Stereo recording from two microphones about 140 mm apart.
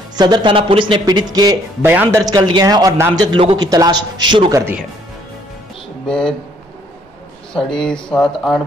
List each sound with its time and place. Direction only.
0.1 s speech: 30° right (ahead or behind)
1.8 s speech: 15° right (ahead or behind)
2.2 s a man's voice: 30° right (ahead or behind)
6.0 s speech: 5° left (ahead or behind)
7.5 s speech: 5° left (ahead or behind)